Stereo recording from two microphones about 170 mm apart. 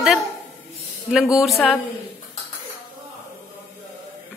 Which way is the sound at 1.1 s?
5° right (ahead or behind).